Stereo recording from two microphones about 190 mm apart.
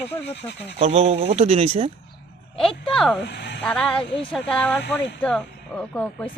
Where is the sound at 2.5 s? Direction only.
5° left (ahead or behind).